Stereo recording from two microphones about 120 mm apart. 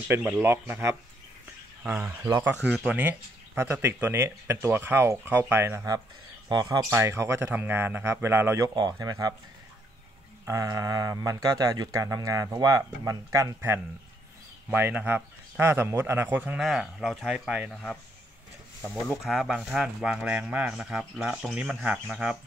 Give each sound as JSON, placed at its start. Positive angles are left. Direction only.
{"t": 0.1, "sound": "speech", "side_deg": -20}
{"t": 1.8, "sound": "speech", "side_deg": -5}
{"t": 2.6, "sound": "speech", "side_deg": -10}
{"t": 6.5, "sound": "speech", "side_deg": -35}
{"t": 6.9, "sound": "speech", "side_deg": -20}
{"t": 10.4, "sound": "speech", "side_deg": -25}
{"t": 16.5, "sound": "speech", "side_deg": -5}
{"t": 19.0, "sound": "speech", "side_deg": 0}